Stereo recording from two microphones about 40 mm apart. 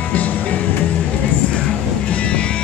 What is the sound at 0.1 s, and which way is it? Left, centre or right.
Music, left.